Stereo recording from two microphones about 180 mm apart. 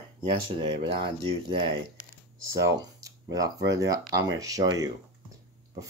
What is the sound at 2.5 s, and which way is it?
Speech, 20° right (ahead or behind).